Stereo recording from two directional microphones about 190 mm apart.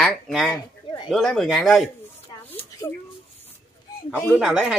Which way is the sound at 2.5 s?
10° left (ahead or behind).